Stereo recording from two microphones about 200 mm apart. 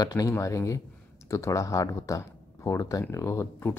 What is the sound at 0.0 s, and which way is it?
Speech, 20° left (ahead or behind).